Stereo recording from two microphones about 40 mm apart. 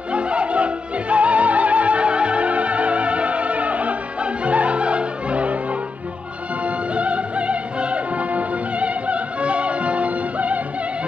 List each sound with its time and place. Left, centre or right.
0.1 s music: right